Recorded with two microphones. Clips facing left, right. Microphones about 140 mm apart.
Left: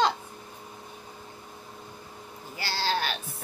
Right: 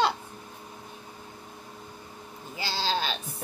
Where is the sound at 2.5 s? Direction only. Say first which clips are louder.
Even; 20° right (ahead or behind).